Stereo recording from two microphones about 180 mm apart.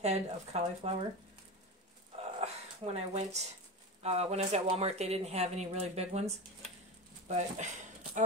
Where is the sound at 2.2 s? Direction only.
35° right (ahead or behind).